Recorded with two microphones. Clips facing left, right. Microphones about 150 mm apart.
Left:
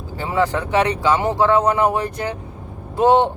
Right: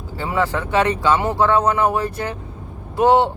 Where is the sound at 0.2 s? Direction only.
20° left (ahead or behind).